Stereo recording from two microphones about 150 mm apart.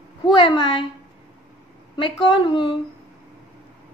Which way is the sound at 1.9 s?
35° left (ahead or behind).